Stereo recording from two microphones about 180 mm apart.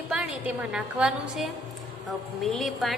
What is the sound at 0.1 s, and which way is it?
A woman's voice, 5° right (ahead or behind).